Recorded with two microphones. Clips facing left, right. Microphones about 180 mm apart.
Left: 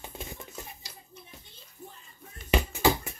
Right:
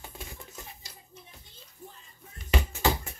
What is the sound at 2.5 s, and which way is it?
Bouncing, 15° left (ahead or behind).